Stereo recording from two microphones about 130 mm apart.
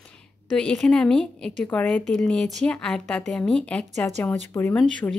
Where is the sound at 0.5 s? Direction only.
5° left (ahead or behind).